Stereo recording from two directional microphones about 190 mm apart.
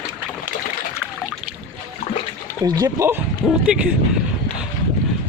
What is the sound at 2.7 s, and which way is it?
Speech, 20° right (ahead or behind).